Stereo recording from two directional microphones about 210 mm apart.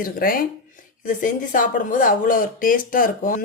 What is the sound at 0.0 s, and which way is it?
Speech, 45° left (ahead or behind).